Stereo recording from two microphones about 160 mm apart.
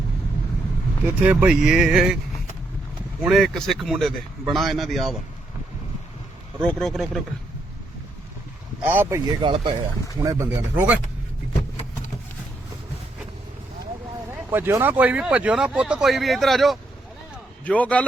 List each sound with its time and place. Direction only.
1.3 s speech: 10° right (ahead or behind)
3.2 s speech: centre (ahead or behind)
6.6 s speech: 5° left (ahead or behind)
8.9 s speech: 15° right (ahead or behind)
9.4 s speech: 30° right (ahead or behind)
10.2 s speech: 20° right (ahead or behind)
14.3 s a man's voice: 15° right (ahead or behind); by 18.0 s 10° left (ahead or behind)